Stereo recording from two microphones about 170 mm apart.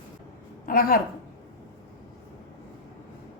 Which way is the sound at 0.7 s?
55° left (ahead or behind).